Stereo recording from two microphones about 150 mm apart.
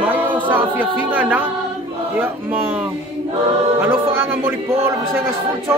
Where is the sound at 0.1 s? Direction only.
10° right (ahead or behind).